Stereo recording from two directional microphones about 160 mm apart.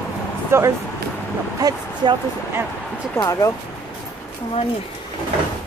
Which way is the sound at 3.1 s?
20° left (ahead or behind).